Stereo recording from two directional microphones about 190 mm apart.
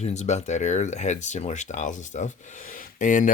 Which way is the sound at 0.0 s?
35° left (ahead or behind).